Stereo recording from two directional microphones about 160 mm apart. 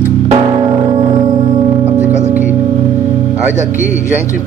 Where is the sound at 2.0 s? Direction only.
45° right (ahead or behind).